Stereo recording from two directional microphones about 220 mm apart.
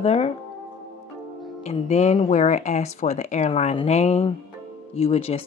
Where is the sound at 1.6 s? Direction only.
30° left (ahead or behind).